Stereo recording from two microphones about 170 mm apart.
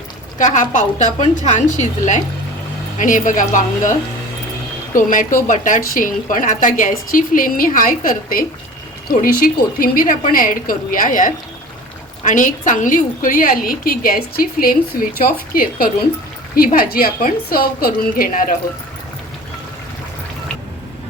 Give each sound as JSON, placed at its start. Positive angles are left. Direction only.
{"t": 0.3, "sound": "a woman's voice", "side_deg": 50}
{"t": 4.9, "sound": "a woman's voice", "side_deg": 50}